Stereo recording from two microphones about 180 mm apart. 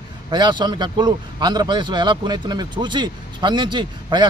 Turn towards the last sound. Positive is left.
turn(degrees=-25)  # may be behind; listen again after turning